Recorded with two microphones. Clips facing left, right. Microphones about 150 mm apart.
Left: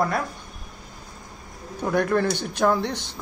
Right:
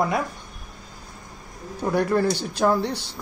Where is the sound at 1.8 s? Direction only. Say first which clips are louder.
Right 1 dB; 5° right (ahead or behind).